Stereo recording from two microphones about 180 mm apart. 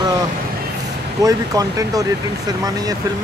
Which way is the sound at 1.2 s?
20° right (ahead or behind).